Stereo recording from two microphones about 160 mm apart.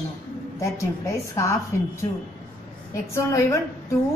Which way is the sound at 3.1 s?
20° left (ahead or behind).